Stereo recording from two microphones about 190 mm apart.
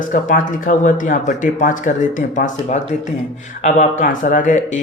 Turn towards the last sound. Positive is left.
turn(degrees=40)  # may be behind; listen again after turning